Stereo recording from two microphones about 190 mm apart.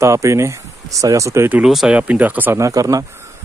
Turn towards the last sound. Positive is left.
turn(degrees=-20)  # may be behind; listen again after turning